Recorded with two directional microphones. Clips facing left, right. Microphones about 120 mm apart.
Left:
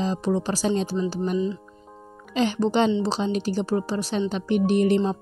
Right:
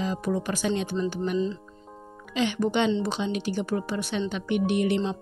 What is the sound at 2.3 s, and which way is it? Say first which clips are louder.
Speech: left 3 dB; 40° left (ahead or behind).